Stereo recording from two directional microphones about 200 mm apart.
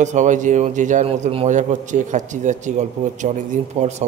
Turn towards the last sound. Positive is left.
turn(degrees=-35)  # may be behind; listen again after turning